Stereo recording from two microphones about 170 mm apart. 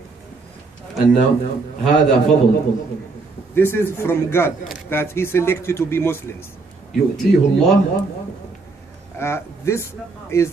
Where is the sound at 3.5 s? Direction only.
15° left (ahead or behind).